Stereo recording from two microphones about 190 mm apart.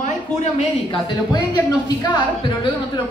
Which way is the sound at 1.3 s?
20° left (ahead or behind).